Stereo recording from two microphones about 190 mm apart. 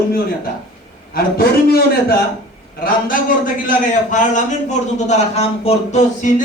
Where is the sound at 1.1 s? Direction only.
55° left (ahead or behind).